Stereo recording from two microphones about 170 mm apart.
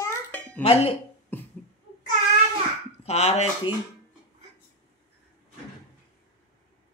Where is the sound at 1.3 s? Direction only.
10° left (ahead or behind).